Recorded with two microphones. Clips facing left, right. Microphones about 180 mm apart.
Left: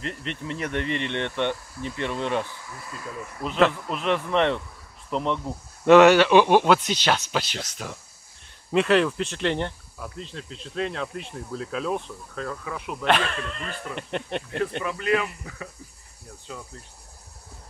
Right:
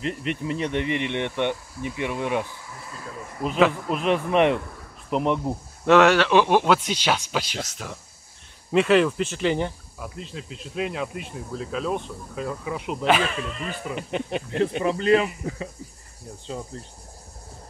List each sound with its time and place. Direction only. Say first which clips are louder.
0.0 s speech: right 5 dB; 10° right (ahead or behind)
5.9 s speech: left 3 dB; centre (ahead or behind)
12.4 s speech: right 3 dB; 15° right (ahead or behind)
13.0 s speech: right 1 dB; 5° right (ahead or behind)
14.8 s speech: right 6 dB; 30° right (ahead or behind)
16.4 s speech: right 6 dB; 30° right (ahead or behind)